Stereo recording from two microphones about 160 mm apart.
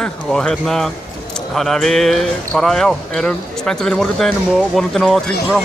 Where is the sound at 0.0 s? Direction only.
5° left (ahead or behind).